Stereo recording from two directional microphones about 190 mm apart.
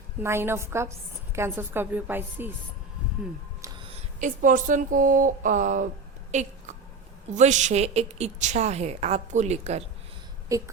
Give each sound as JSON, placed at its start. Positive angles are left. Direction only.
{"t": 0.2, "sound": "a woman's voice", "side_deg": -10}
{"t": 3.6, "sound": "music", "side_deg": -25}
{"t": 4.4, "sound": "a woman's voice", "side_deg": -45}
{"t": 10.5, "sound": "a woman's voice", "side_deg": -15}